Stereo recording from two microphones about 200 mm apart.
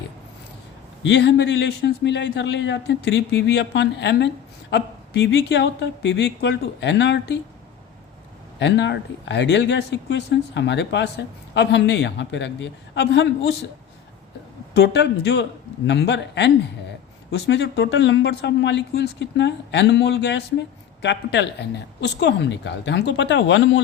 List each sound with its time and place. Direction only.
1.0 s speech: 60° left (ahead or behind)
8.5 s speech: 60° left (ahead or behind)
14.7 s speech: 55° left (ahead or behind)